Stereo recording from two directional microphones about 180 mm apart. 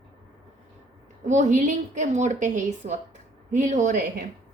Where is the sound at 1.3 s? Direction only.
45° right (ahead or behind).